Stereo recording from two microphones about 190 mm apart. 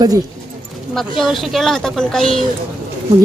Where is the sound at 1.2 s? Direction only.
Centre (ahead or behind).